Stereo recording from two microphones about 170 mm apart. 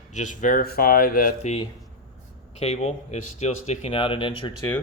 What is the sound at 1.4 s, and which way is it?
Speech, 40° left (ahead or behind).